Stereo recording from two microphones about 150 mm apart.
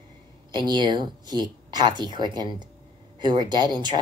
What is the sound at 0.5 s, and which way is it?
Speech, 30° right (ahead or behind).